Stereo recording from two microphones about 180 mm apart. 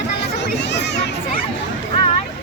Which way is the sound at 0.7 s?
70° left (ahead or behind).